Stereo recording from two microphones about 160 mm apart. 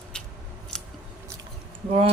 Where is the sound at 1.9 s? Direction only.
40° right (ahead or behind).